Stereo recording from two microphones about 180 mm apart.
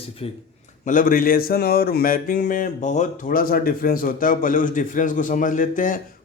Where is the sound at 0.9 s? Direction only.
50° left (ahead or behind).